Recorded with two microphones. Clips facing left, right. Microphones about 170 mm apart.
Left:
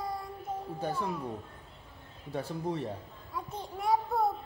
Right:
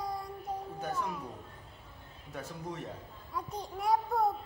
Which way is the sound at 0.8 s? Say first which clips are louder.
Left 3 dB; 30° left (ahead or behind).